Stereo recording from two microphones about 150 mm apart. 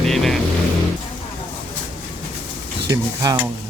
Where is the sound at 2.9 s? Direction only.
25° right (ahead or behind).